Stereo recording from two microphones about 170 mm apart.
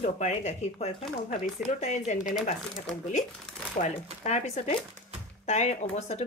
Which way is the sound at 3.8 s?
50° left (ahead or behind).